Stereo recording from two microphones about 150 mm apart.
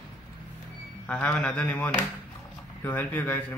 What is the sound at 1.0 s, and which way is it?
A man's voice, 10° left (ahead or behind).